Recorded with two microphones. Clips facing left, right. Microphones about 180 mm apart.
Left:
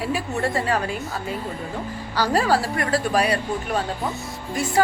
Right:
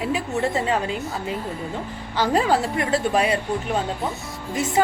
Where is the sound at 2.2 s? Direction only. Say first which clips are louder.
Right 1 dB; 20° right (ahead or behind).